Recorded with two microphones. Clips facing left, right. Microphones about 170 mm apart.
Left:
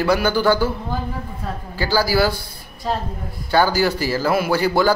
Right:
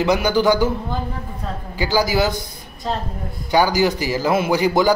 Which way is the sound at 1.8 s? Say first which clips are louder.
Even; 20° right (ahead or behind).